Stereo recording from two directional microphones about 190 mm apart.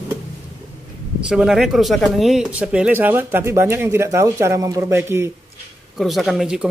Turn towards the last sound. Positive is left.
turn(degrees=-5)  # may be behind; listen again after turning